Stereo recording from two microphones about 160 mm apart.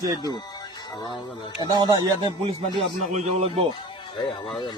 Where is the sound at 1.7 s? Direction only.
25° right (ahead or behind); by 3.6 s 45° right (ahead or behind).